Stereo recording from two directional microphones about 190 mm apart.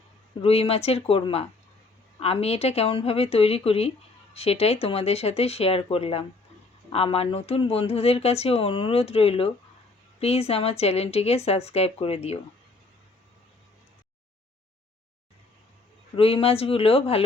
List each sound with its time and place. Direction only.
0.4 s speech: 30° left (ahead or behind)
16.1 s speech: 30° left (ahead or behind)